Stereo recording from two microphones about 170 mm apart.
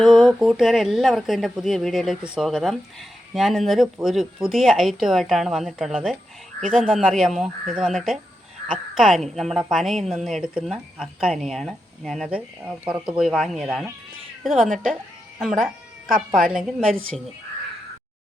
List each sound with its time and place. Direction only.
0.0 s a woman's voice: centre (ahead or behind)
15.4 s a sound: centre (ahead or behind)
16.1 s a woman's voice: 55° right (ahead or behind)
16.5 s a woman's voice: 5° right (ahead or behind)